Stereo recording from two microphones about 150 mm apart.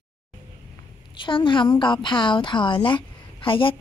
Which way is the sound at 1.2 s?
35° left (ahead or behind).